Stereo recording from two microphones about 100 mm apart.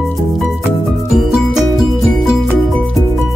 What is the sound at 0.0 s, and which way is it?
Music, centre (ahead or behind).